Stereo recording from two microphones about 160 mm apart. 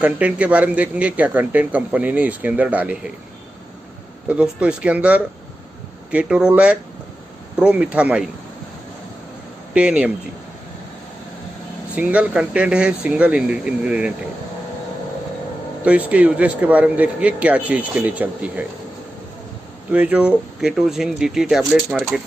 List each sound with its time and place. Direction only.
0.0 s speech: 10° right (ahead or behind)
4.3 s speech: 5° right (ahead or behind)
9.8 s speech: 5° right (ahead or behind)
11.9 s speech: 10° right (ahead or behind)
15.8 s speech: 10° right (ahead or behind)
19.9 s speech: 10° right (ahead or behind)